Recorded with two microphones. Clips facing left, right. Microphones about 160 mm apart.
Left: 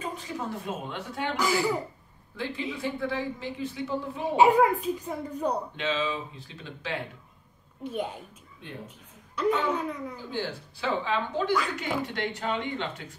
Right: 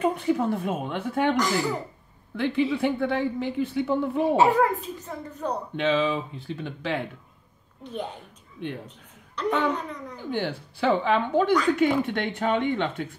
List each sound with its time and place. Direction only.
0.0 s speech: 60° right (ahead or behind)
1.3 s speech: 10° left (ahead or behind)
2.3 s speech: 60° right (ahead or behind)
4.4 s speech: 10° left (ahead or behind)
5.8 s speech: 55° right (ahead or behind)
7.8 s a woman's voice: 10° left (ahead or behind)
10.3 s speech: 60° right (ahead or behind)